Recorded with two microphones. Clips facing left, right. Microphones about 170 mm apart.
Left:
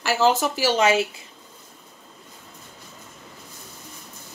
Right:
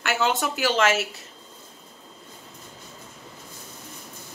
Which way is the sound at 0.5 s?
35° left (ahead or behind).